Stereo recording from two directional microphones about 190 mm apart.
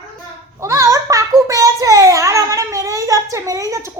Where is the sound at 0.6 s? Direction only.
15° right (ahead or behind).